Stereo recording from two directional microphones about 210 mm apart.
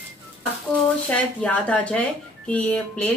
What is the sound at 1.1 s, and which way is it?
Speech, 5° left (ahead or behind).